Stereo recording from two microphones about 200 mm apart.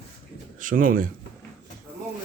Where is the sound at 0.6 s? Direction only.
40° right (ahead or behind).